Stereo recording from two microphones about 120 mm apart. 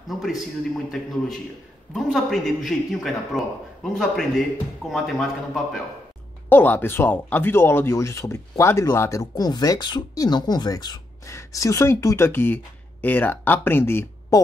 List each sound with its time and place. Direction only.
0.1 s a man's voice: centre (ahead or behind)
6.5 s speech: 15° left (ahead or behind)